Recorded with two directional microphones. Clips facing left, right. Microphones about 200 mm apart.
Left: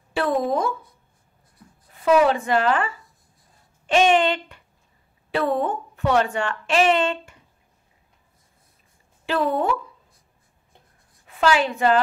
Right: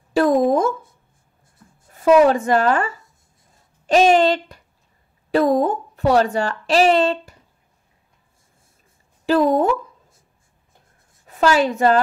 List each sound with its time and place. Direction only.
0.1 s speech: 40° right (ahead or behind)
1.9 s a woman's voice: 45° right (ahead or behind)
9.2 s speech: 40° right (ahead or behind)
11.2 s a woman's voice: 40° right (ahead or behind)